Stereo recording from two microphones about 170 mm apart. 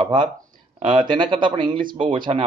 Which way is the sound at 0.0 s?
30° right (ahead or behind).